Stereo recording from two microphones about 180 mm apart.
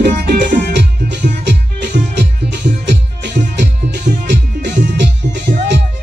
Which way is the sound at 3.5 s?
75° right (ahead or behind).